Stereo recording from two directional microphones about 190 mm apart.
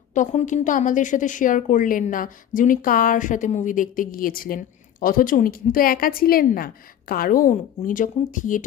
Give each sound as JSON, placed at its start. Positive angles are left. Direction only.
{"t": 0.1, "sound": "a woman's voice", "side_deg": 40}